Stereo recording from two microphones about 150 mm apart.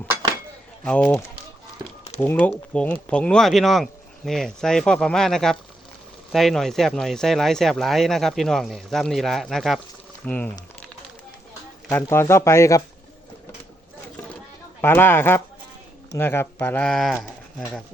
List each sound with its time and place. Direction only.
0.9 s speech: 10° left (ahead or behind)
2.2 s speech: 10° left (ahead or behind)
10.2 s speech: 10° left (ahead or behind)
11.9 s speech: 15° left (ahead or behind)
14.8 s speech: 15° left (ahead or behind)